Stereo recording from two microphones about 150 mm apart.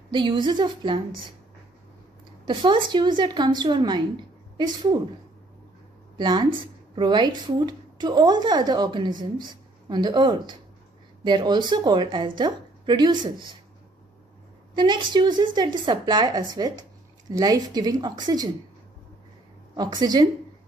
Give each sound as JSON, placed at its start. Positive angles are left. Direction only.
{"t": 0.1, "sound": "a woman's voice", "side_deg": -30}
{"t": 2.4, "sound": "a woman's voice", "side_deg": -30}
{"t": 6.1, "sound": "a woman's voice", "side_deg": -30}
{"t": 14.8, "sound": "a woman's voice", "side_deg": -30}
{"t": 19.7, "sound": "a woman's voice", "side_deg": -25}